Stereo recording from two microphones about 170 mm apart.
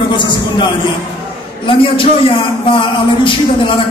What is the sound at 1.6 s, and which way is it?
A man's voice, 30° left (ahead or behind).